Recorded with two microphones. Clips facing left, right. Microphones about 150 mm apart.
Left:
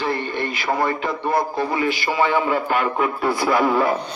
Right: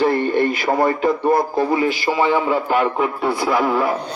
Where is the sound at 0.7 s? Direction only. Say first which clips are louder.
Right 1 dB; 30° right (ahead or behind).